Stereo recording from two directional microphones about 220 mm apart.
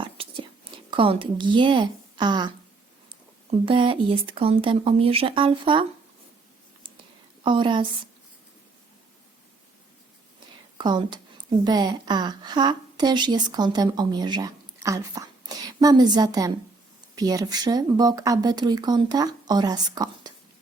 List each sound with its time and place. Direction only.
0.0 s whispering: 25° right (ahead or behind)
3.7 s speech: 25° right (ahead or behind)
6.8 s a sound: 20° right (ahead or behind)
7.4 s speech: 20° right (ahead or behind)
10.8 s speech: 20° right (ahead or behind)